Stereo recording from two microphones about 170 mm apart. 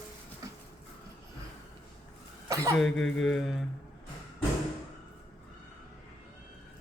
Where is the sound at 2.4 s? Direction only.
20° right (ahead or behind).